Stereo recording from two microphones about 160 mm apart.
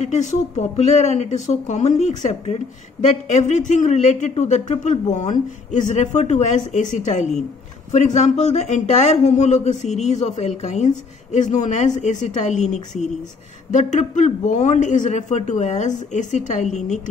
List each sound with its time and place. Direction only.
0.0 s speech: 50° left (ahead or behind)